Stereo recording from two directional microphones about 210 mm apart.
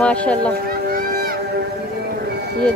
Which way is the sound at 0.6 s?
45° right (ahead or behind).